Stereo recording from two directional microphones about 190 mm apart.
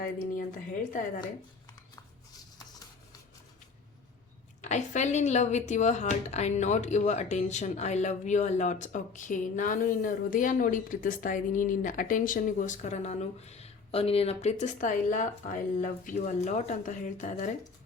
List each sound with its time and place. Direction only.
4.6 s speech: 40° left (ahead or behind)